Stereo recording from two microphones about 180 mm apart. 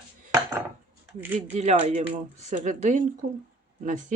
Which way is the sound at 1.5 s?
35° right (ahead or behind).